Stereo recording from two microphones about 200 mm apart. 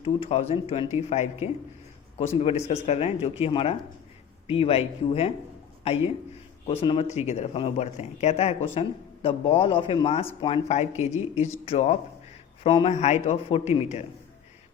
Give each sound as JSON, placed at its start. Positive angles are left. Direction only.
{"t": 0.0, "sound": "speech", "side_deg": 30}
{"t": 6.7, "sound": "speech", "side_deg": 30}